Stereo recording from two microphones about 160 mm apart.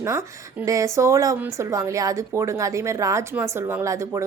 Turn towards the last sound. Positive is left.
turn(degrees=-20)  # may be behind; listen again after turning